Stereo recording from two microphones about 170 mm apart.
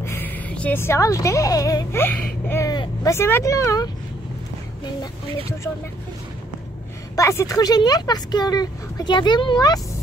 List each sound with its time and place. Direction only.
0.0 s a woman's voice: 10° left (ahead or behind)
7.2 s speech: 20° left (ahead or behind)